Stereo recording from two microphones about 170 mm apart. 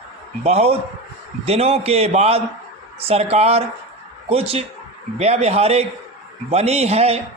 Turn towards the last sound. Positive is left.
turn(degrees=-40)  # may be behind; listen again after turning